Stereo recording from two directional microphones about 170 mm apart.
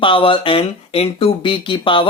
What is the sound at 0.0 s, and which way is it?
Speech, 30° left (ahead or behind).